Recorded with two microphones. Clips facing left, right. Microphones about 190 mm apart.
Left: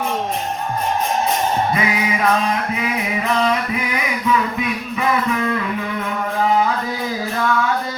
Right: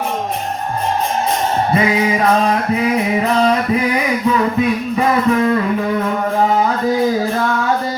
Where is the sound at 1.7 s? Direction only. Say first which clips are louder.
Right 5 dB; 35° right (ahead or behind).